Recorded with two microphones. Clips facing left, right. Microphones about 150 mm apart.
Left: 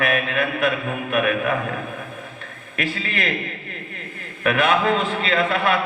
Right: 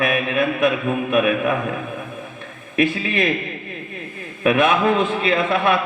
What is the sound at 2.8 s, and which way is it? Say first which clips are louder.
Speech: right 7 dB; 20° right (ahead or behind).